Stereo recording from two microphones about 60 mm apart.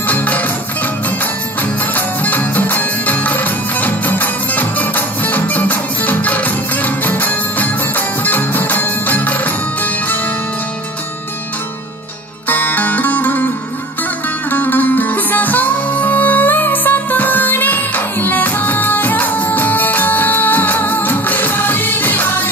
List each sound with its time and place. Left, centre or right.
0.0 s music: left
12.4 s music: left
14.5 s music: left